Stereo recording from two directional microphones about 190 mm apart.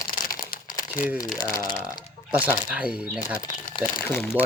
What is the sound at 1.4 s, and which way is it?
Speech, 20° left (ahead or behind).